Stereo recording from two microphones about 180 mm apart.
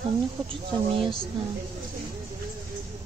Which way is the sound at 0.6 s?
30° right (ahead or behind).